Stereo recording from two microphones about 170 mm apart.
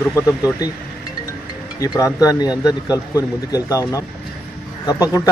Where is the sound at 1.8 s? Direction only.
20° left (ahead or behind).